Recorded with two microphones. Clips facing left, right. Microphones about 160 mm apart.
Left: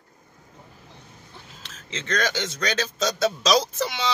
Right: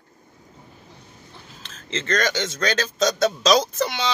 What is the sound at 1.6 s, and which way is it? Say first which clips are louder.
A man's voice: right 5 dB; 5° left (ahead or behind).